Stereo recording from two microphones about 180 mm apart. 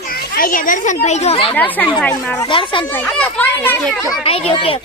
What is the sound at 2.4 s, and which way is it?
Speech, 30° left (ahead or behind).